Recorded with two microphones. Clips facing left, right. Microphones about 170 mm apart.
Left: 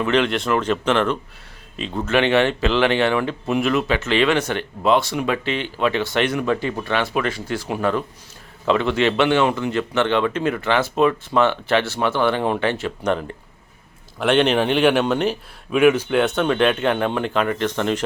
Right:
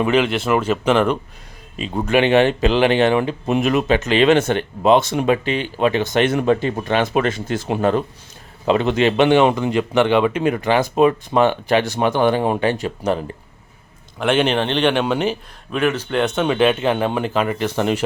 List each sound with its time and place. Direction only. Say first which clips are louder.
0.0 s speech: right 2 dB; 5° right (ahead or behind)
14.2 s speech: even; centre (ahead or behind)